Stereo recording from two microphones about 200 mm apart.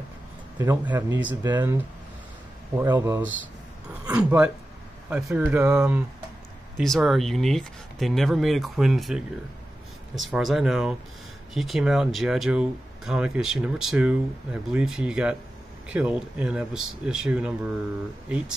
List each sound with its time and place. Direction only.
0.6 s speech: 10° right (ahead or behind)
2.8 s speech: 15° right (ahead or behind)
6.8 s speech: centre (ahead or behind)